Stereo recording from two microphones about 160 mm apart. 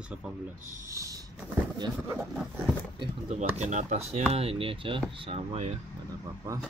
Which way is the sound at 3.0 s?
45° right (ahead or behind).